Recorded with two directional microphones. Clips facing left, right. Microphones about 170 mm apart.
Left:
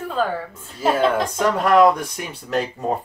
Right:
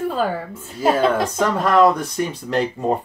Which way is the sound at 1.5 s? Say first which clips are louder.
Left 1 dB; 10° left (ahead or behind).